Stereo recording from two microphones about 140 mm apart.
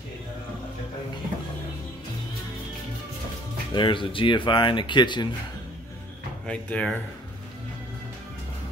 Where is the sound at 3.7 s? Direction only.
35° left (ahead or behind).